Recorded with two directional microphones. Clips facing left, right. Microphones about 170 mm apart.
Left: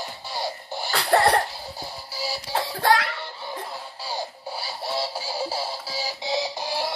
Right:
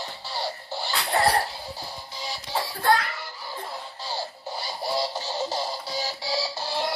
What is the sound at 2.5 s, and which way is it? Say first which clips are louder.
Music: left 1 dB; 10° left (ahead or behind).